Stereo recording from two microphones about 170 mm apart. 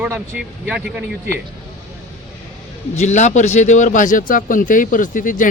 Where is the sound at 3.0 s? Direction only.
45° left (ahead or behind).